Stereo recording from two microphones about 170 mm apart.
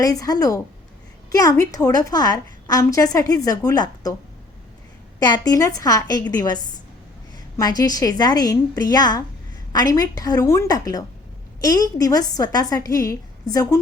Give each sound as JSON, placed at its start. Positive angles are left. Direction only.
{"t": 0.0, "sound": "a woman's voice", "side_deg": 20}
{"t": 5.2, "sound": "a woman's voice", "side_deg": 20}